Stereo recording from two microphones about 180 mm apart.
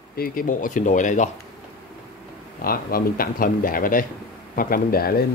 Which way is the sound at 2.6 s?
55° left (ahead or behind).